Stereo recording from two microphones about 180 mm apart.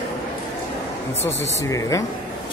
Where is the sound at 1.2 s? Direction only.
15° left (ahead or behind).